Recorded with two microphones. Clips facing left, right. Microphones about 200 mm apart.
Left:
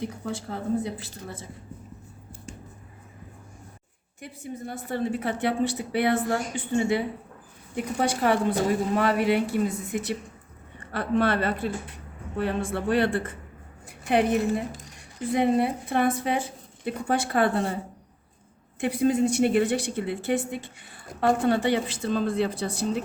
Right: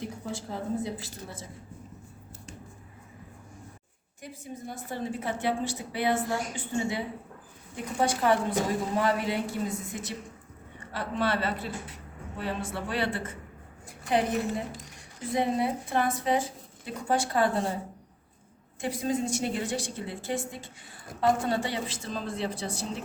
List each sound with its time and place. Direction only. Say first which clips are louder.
0.3 s a woman's voice: left 4 dB; 60° left (ahead or behind)
4.2 s a woman's voice: left 4 dB; 65° left (ahead or behind)
8.0 s a woman's voice: left 2 dB; 65° left (ahead or behind)
18.8 s a woman's voice: left 7 dB; 60° left (ahead or behind)